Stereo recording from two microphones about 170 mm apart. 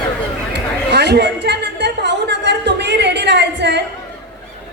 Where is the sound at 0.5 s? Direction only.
80° right.